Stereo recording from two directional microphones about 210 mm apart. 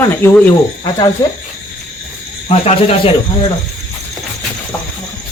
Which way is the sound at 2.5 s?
30° left (ahead or behind).